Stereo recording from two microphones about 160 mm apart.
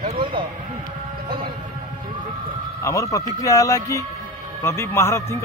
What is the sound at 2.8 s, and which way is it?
A man's voice, 20° left (ahead or behind).